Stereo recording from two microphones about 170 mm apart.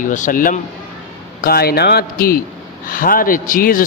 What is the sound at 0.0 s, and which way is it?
Speech, 50° left (ahead or behind).